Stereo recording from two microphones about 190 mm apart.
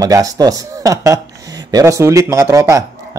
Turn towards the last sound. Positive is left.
turn(degrees=-15)  # may be behind; listen again after turning